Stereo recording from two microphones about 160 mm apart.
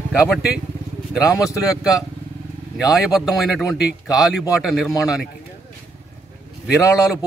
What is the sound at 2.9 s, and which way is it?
A man's voice, centre (ahead or behind).